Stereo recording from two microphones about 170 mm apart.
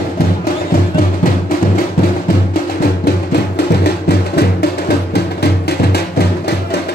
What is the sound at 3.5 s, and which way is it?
Music, 75° left (ahead or behind).